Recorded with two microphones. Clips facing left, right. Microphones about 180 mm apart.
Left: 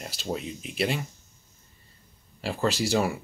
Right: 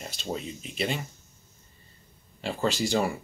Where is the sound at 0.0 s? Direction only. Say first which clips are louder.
Left 2 dB; 5° left (ahead or behind).